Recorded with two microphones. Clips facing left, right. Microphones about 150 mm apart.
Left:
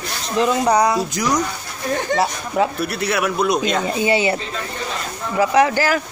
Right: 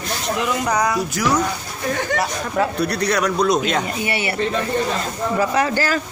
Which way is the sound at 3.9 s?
20° left (ahead or behind).